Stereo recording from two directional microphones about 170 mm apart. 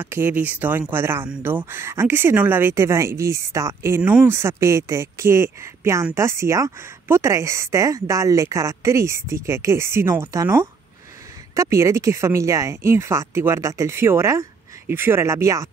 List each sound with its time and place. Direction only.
0.0 s speech: 10° right (ahead or behind)